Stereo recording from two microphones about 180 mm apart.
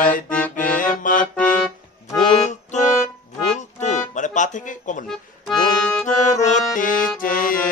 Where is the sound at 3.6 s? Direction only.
40° left (ahead or behind).